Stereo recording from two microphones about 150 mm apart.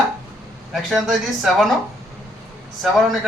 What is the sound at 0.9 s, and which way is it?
Speech, centre (ahead or behind).